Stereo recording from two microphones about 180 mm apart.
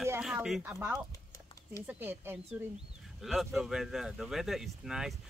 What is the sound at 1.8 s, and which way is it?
Speech, 10° right (ahead or behind).